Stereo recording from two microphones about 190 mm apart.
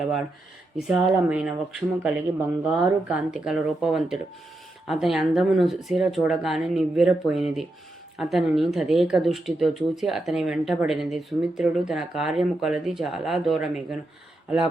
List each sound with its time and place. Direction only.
0.8 s speech: 5° right (ahead or behind)